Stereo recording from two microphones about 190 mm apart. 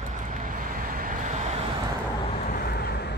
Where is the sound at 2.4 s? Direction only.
50° left (ahead or behind).